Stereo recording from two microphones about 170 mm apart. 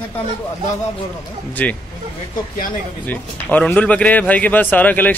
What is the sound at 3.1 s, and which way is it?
A man's voice, 10° left (ahead or behind).